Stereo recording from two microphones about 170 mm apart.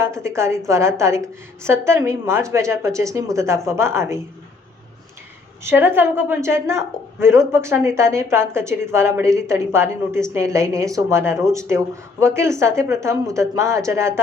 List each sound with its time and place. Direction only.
0.0 s a woman's voice: 15° right (ahead or behind)
5.6 s a woman's voice: 15° right (ahead or behind)